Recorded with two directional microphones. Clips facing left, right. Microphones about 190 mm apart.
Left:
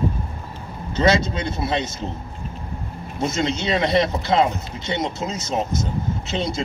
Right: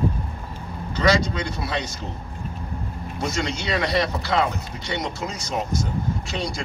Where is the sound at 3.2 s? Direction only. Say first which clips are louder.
Left 4 dB; 20° left (ahead or behind).